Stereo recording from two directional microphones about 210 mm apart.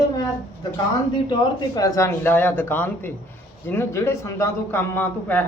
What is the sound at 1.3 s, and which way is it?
A man's voice, 15° left (ahead or behind).